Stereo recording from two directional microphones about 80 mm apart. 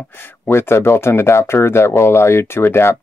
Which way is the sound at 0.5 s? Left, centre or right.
Left.